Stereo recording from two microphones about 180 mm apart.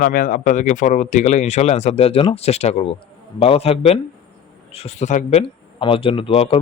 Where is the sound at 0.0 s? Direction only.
50° left (ahead or behind).